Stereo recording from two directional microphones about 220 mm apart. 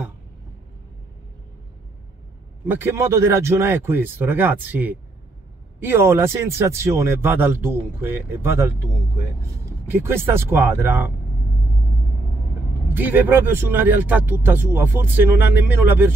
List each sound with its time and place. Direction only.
2.6 s speech: 10° right (ahead or behind)
9.8 s speech: 10° right (ahead or behind)
12.8 s speech: 10° right (ahead or behind)